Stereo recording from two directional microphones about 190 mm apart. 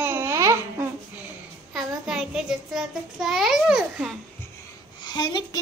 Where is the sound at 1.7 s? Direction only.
Centre (ahead or behind).